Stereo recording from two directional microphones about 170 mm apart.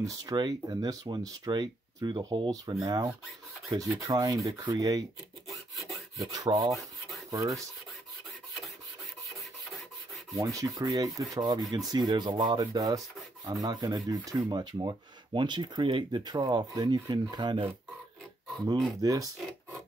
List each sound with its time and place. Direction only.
0.0 s speech: 20° right (ahead or behind)
5.5 s rub: centre (ahead or behind)
6.3 s speech: 20° right (ahead or behind)
6.7 s rub: centre (ahead or behind)
7.2 s rub: 20° right (ahead or behind)
9.4 s rub: centre (ahead or behind)
10.3 s speech: 20° right (ahead or behind)
18.9 s speech: 20° right (ahead or behind)
19.3 s a sound: centre (ahead or behind)